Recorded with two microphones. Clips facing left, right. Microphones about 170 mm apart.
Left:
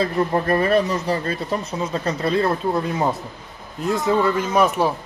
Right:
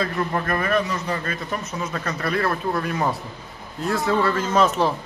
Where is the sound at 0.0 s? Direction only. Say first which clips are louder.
Left 4 dB; 30° left (ahead or behind).